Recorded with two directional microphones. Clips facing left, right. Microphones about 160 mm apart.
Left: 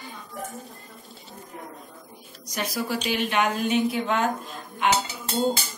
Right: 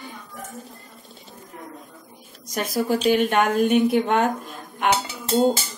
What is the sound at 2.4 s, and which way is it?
Speech, 50° right (ahead or behind).